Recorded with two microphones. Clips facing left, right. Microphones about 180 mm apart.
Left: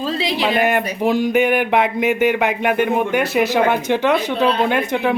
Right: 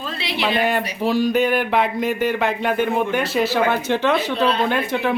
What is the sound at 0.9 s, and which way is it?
Speech, 15° left (ahead or behind).